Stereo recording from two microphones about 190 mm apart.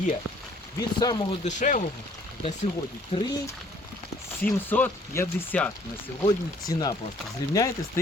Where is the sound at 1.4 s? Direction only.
40° left (ahead or behind).